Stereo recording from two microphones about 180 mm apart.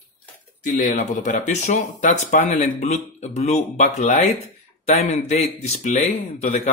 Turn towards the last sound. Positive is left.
turn(degrees=45)  # may be behind; listen again after turning